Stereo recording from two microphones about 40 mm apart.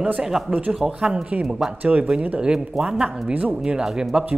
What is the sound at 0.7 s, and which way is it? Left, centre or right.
Speech, centre.